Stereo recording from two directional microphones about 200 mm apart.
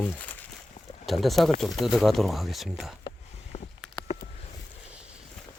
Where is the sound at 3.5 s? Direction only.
35° left (ahead or behind).